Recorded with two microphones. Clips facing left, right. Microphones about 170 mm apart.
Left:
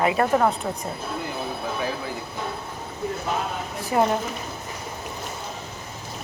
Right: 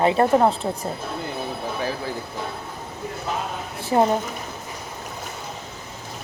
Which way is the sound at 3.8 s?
30° right (ahead or behind).